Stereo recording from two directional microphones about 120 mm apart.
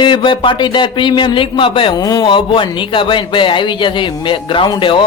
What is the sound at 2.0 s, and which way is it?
Speech, 30° left (ahead or behind).